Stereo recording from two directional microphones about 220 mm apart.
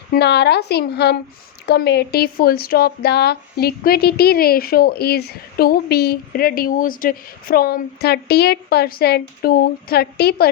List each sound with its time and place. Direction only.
0.1 s speech: 50° left (ahead or behind)